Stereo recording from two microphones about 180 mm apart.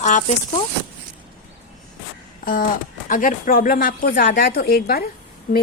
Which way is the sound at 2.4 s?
50° left (ahead or behind).